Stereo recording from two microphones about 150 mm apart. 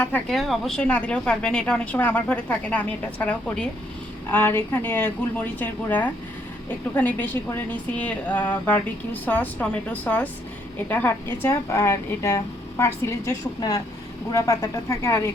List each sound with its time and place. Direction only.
0.3 s a woman's voice: centre (ahead or behind); by 15.3 s 20° left (ahead or behind)